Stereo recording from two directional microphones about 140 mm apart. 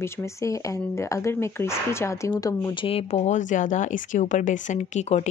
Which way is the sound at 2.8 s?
45° left (ahead or behind).